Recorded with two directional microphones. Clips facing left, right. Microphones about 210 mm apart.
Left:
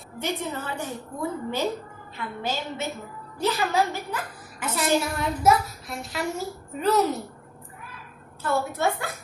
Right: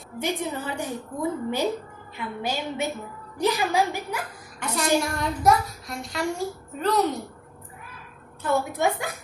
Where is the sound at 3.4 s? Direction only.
15° right (ahead or behind).